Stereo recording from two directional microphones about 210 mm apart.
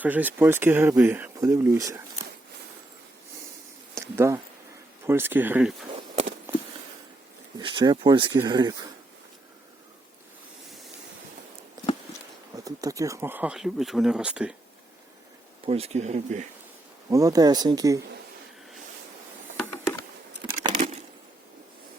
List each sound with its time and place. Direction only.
0.0 s speech: 10° right (ahead or behind)
3.9 s a sound: 10° right (ahead or behind)
5.0 s speech: 10° right (ahead or behind)
7.6 s speech: 20° right (ahead or behind)
12.5 s speech: 15° right (ahead or behind)
15.6 s speech: 30° right (ahead or behind)
17.1 s speech: 15° right (ahead or behind)
20.4 s a sound: 25° right (ahead or behind)